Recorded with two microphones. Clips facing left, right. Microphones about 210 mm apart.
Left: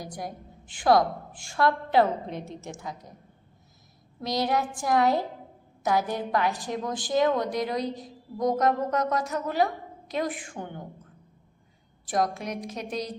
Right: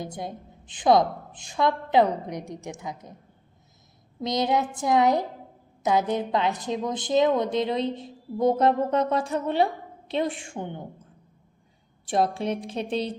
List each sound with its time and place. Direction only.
0.0 s a woman's voice: 25° right (ahead or behind)
4.2 s a woman's voice: 20° right (ahead or behind)
12.0 s a woman's voice: 30° right (ahead or behind)